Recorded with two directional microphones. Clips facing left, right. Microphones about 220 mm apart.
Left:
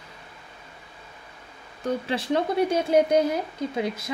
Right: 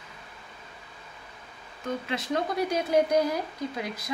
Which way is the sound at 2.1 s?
30° left (ahead or behind).